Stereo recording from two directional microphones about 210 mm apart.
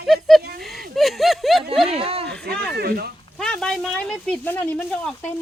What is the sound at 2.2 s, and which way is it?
Speech, 50° right (ahead or behind).